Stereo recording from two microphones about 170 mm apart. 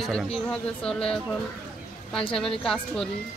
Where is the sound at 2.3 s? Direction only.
Centre (ahead or behind).